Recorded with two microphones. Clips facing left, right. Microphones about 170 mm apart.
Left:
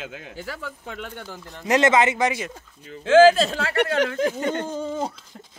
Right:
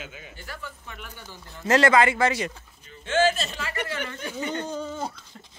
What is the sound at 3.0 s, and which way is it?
Speech, 90° left.